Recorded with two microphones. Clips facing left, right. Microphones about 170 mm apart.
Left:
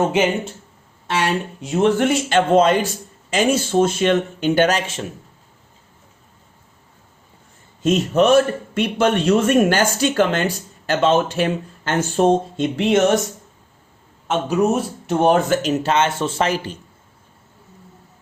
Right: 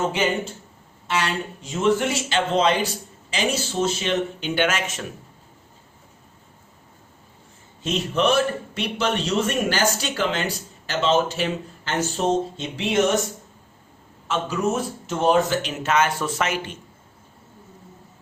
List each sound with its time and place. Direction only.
1.0 s a man's voice: 60° left (ahead or behind); by 5.0 s 35° left (ahead or behind)
7.8 s a man's voice: 45° left (ahead or behind)
14.3 s speech: 60° left (ahead or behind)
15.8 s speech: 30° left (ahead or behind)